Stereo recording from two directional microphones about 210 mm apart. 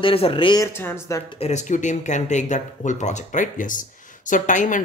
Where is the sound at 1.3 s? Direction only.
30° left (ahead or behind).